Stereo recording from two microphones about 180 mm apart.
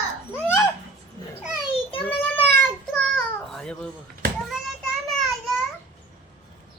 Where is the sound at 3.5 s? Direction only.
5° left (ahead or behind).